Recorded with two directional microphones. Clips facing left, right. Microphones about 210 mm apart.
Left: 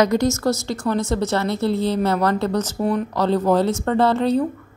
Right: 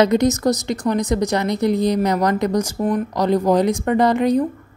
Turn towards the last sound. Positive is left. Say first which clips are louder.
# right 2 dB
turn(degrees=-15)  # may be behind; listen again after turning